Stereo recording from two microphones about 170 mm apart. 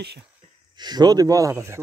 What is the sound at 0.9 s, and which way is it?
Speech, 25° right (ahead or behind).